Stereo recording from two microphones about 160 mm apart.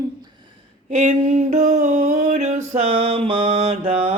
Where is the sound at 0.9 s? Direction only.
45° right (ahead or behind).